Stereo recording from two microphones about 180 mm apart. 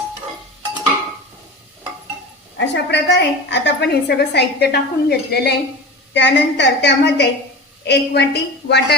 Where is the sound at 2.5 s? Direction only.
75° left (ahead or behind).